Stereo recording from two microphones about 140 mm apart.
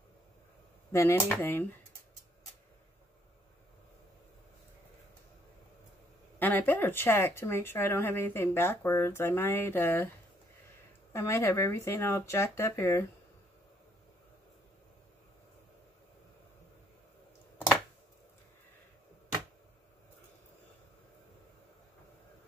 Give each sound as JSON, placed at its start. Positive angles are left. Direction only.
{"t": 0.9, "sound": "speech", "side_deg": 20}
{"t": 6.4, "sound": "speech", "side_deg": 15}
{"t": 11.1, "sound": "speech", "side_deg": 20}